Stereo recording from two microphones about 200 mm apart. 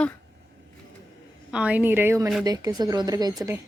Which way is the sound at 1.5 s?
5° right (ahead or behind).